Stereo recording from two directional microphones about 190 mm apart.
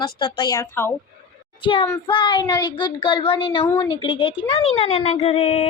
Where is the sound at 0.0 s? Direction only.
25° left (ahead or behind).